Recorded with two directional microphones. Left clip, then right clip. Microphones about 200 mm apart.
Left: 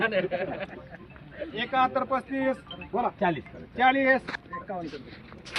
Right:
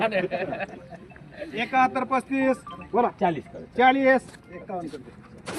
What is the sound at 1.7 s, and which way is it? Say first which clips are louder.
Speech: right 3 dB; 35° right (ahead or behind).